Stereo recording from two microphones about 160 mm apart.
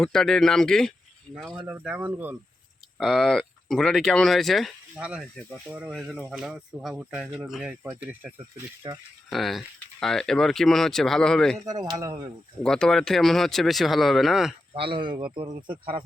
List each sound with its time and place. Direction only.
0.0 s speech: 5° left (ahead or behind); by 2.3 s 10° right (ahead or behind)
3.0 s speech: centre (ahead or behind)
5.6 s speech: 10° right (ahead or behind)
9.3 s speech: centre (ahead or behind)
11.6 s speech: 25° right (ahead or behind)
12.6 s speech: 5° left (ahead or behind)
14.7 s speech: 35° right (ahead or behind)